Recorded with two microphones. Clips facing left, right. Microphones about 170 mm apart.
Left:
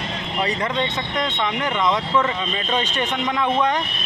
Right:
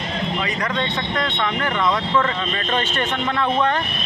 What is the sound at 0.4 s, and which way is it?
Speech, 30° left (ahead or behind).